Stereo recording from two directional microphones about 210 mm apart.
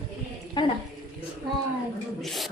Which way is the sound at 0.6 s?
20° left (ahead or behind).